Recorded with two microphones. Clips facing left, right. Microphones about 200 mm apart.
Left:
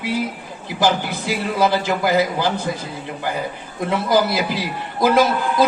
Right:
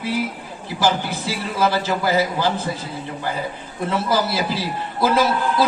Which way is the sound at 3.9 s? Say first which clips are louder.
Left 3 dB; 15° left (ahead or behind).